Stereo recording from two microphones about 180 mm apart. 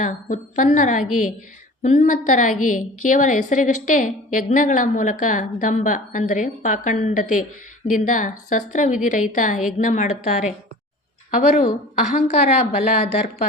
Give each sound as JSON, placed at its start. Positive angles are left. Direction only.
{"t": 0.0, "sound": "a woman's voice", "side_deg": 45}